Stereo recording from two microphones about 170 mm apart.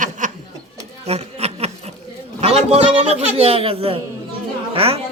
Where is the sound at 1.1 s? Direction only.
40° right (ahead or behind).